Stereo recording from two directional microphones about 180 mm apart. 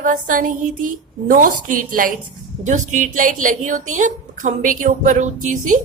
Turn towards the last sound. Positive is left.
turn(degrees=-45)  # may be behind; listen again after turning